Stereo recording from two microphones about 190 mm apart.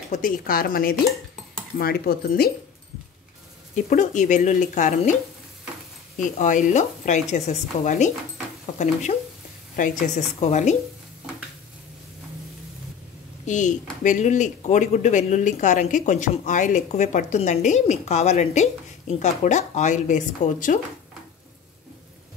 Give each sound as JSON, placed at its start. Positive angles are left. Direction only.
{"t": 0.1, "sound": "speech", "side_deg": 45}
{"t": 3.7, "sound": "speech", "side_deg": 40}
{"t": 6.1, "sound": "speech", "side_deg": 40}
{"t": 9.8, "sound": "speech", "side_deg": 45}
{"t": 13.5, "sound": "speech", "side_deg": 40}